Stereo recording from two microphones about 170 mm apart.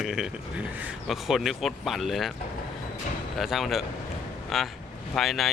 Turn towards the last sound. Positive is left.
turn(degrees=0)  # may be behind; listen again after turning